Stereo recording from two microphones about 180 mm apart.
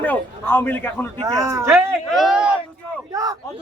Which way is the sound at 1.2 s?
20° right (ahead or behind).